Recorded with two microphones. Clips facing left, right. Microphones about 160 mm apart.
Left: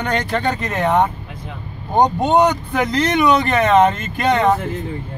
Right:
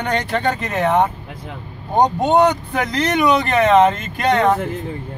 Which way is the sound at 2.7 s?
10° right (ahead or behind).